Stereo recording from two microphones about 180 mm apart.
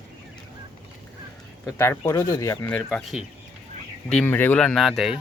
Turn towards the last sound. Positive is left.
turn(degrees=0)  # may be behind; listen again after turning